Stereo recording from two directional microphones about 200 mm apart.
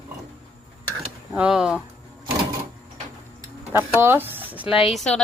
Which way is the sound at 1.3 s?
5° right (ahead or behind).